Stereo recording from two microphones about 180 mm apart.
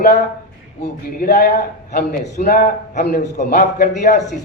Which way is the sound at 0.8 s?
65° left (ahead or behind).